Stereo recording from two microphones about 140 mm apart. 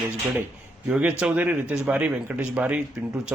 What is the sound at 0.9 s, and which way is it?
Speech, 10° right (ahead or behind).